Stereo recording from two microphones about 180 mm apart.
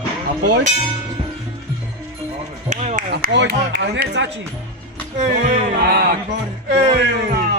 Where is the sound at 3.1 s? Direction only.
65° right (ahead or behind).